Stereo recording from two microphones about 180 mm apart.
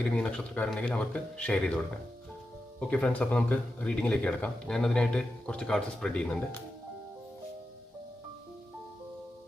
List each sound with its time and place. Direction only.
0.1 s speech: 5° left (ahead or behind)
2.9 s speech: 5° left (ahead or behind)